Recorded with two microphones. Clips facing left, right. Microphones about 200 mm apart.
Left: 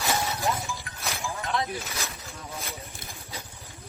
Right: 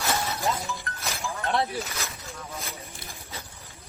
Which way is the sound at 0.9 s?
10° left (ahead or behind).